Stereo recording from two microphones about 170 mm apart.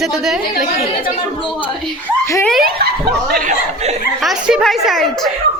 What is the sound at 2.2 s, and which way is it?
Speech, 15° left (ahead or behind).